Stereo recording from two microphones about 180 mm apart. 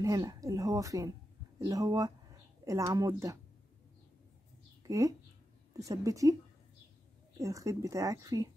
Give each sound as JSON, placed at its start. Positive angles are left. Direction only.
{"t": 0.0, "sound": "a woman's voice", "side_deg": -20}
{"t": 4.8, "sound": "speech", "side_deg": -20}
{"t": 7.3, "sound": "speech", "side_deg": -20}